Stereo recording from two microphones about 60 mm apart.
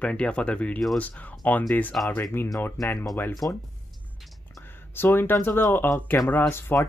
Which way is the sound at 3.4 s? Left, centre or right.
Left.